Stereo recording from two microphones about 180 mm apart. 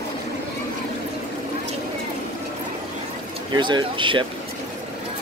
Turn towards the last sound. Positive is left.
turn(degrees=-25)  # may be behind; listen again after turning